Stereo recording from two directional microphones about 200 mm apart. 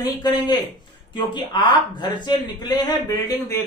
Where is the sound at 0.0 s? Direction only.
20° left (ahead or behind).